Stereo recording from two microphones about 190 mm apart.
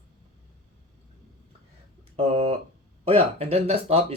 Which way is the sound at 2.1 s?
30° right (ahead or behind).